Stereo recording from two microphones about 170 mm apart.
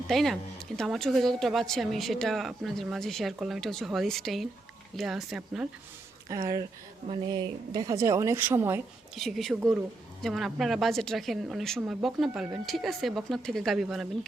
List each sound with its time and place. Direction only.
0.1 s a woman's voice: centre (ahead or behind)
6.2 s speech: 20° right (ahead or behind)
9.1 s a woman's voice: centre (ahead or behind)